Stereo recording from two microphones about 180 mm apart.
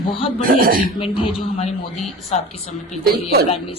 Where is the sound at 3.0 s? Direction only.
60° right (ahead or behind).